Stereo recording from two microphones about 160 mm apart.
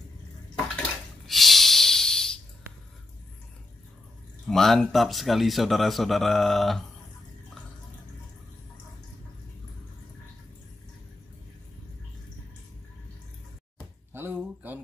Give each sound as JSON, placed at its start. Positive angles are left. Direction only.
{"t": 0.7, "sound": "breathing", "side_deg": 0}
{"t": 4.5, "sound": "speech", "side_deg": 0}
{"t": 14.1, "sound": "a sound", "side_deg": -15}